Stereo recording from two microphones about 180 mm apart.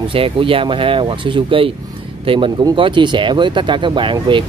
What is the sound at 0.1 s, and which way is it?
Speech, 30° right (ahead or behind).